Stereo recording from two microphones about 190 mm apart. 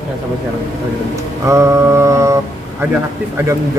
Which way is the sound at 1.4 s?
15° right (ahead or behind).